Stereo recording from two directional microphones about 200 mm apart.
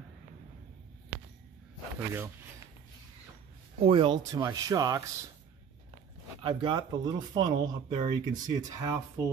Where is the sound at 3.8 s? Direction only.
25° right (ahead or behind).